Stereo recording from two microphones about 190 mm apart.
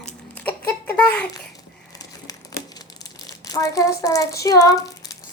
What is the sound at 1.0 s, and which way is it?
Child singing, 5° left (ahead or behind).